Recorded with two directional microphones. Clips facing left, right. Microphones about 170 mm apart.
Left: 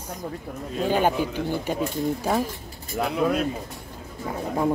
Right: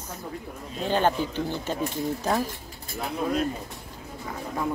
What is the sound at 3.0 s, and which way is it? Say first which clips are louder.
Speech: left 6 dB; 70° left (ahead or behind).